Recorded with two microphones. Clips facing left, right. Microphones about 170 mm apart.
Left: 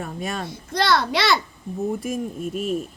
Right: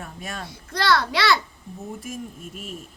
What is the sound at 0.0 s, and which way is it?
Speech, 90° left.